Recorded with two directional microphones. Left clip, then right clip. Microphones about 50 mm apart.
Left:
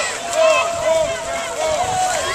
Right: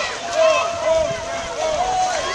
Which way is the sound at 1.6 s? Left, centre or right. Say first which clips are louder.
Even; left.